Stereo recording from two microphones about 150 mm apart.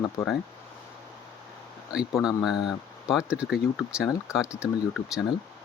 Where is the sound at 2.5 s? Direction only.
30° left (ahead or behind).